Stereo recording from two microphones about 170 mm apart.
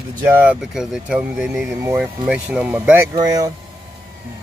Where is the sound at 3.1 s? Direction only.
20° right (ahead or behind).